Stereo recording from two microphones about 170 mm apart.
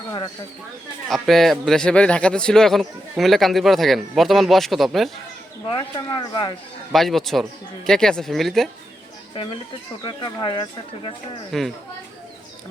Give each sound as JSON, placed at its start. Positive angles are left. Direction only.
{"t": 1.1, "sound": "speech", "side_deg": 0}
{"t": 5.6, "sound": "speech", "side_deg": 25}
{"t": 6.9, "sound": "speech", "side_deg": 0}
{"t": 9.3, "sound": "speech", "side_deg": 30}
{"t": 11.5, "sound": "speech", "side_deg": 0}